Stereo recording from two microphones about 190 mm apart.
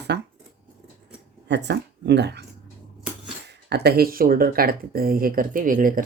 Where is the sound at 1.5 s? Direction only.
65° right (ahead or behind).